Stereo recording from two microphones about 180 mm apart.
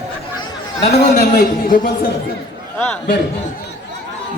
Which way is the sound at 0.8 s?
45° left (ahead or behind).